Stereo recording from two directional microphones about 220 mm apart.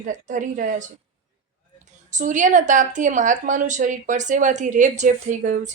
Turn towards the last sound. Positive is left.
turn(degrees=-35)  # may be behind; listen again after turning